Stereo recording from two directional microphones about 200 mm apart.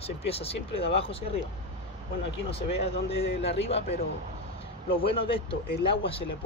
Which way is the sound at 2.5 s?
30° left (ahead or behind).